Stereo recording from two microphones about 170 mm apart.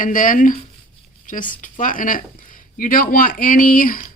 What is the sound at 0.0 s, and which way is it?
Speech, 50° left (ahead or behind).